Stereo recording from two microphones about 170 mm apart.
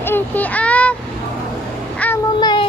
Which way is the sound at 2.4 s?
25° left (ahead or behind).